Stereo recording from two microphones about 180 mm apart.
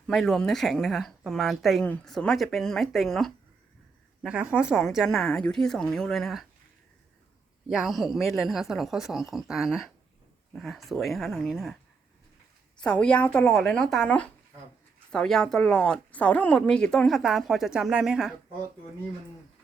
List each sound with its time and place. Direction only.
0.1 s speech: centre (ahead or behind)
7.7 s speech: centre (ahead or behind)
12.8 s speech: 5° left (ahead or behind)